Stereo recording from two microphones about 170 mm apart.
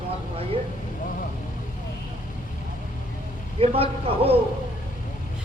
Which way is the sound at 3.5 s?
35° right (ahead or behind).